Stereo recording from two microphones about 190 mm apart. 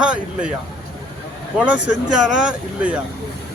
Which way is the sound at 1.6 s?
5° right (ahead or behind).